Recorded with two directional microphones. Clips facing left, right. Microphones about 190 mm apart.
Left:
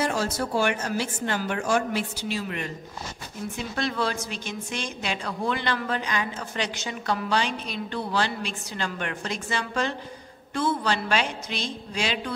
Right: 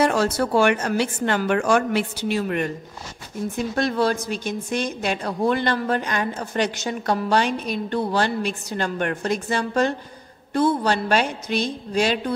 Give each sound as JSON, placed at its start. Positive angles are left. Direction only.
{"t": 0.0, "sound": "a woman's voice", "side_deg": -65}